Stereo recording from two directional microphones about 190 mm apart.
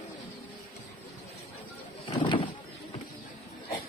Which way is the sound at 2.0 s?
25° left (ahead or behind).